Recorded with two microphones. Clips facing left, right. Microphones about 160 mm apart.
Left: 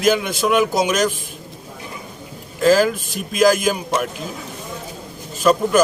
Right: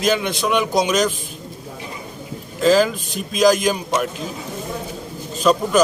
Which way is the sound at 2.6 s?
5° left (ahead or behind).